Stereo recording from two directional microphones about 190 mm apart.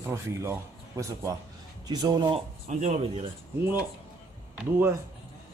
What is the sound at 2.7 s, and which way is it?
Speech, 35° right (ahead or behind).